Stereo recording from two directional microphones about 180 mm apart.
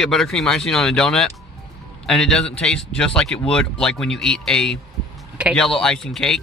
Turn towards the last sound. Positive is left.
turn(degrees=0)  # may be behind; listen again after turning